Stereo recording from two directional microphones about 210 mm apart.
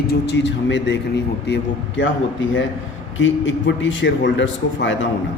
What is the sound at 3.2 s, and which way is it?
A man's voice, 60° left (ahead or behind).